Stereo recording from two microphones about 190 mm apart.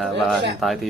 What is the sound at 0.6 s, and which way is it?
Speech, centre (ahead or behind).